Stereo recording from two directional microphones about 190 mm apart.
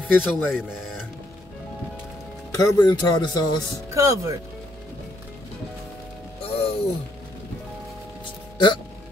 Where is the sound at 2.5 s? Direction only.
20° left (ahead or behind).